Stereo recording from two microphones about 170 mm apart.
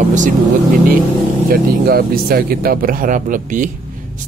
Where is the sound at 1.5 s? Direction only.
65° right (ahead or behind).